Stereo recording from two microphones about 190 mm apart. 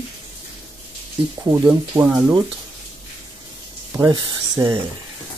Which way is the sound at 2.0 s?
10° right (ahead or behind).